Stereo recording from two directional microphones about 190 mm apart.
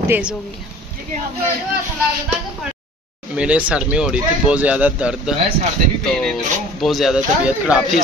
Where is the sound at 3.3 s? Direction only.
5° right (ahead or behind).